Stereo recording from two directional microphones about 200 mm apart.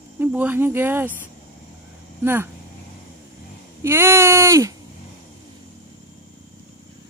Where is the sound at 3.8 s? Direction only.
15° right (ahead or behind).